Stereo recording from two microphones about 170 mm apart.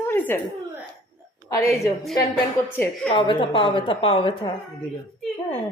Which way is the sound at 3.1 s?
30° left (ahead or behind).